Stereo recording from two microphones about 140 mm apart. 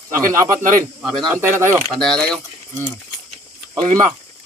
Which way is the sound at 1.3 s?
20° right (ahead or behind).